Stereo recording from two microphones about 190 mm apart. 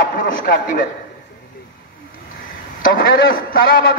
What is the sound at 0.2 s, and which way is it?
Speech, 45° left (ahead or behind).